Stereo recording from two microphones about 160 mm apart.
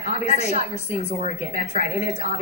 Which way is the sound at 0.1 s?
45° left (ahead or behind).